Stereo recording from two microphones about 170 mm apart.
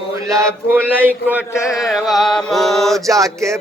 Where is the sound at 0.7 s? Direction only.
10° right (ahead or behind).